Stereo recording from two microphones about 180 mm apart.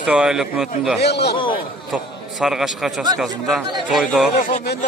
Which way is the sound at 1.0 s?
65° left (ahead or behind).